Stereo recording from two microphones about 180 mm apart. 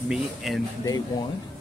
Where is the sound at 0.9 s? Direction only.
20° left (ahead or behind).